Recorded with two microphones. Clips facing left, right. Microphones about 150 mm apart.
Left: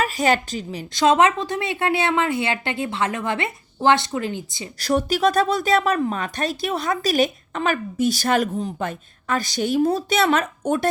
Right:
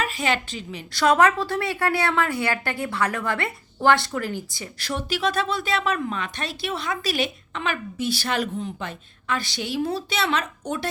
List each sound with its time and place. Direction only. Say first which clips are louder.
0.0 s a woman's voice: left 5 dB; 40° left (ahead or behind)
0.9 s a woman's voice: left 2 dB; 20° left (ahead or behind)
4.8 s speech: left 7 dB; 40° left (ahead or behind)